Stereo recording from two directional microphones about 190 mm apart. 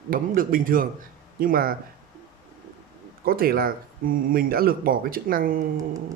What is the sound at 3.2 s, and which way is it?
Speech, 50° right (ahead or behind).